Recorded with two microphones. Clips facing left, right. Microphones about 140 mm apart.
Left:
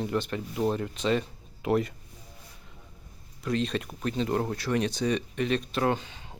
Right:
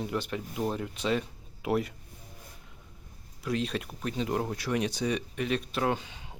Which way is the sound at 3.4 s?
5° right (ahead or behind).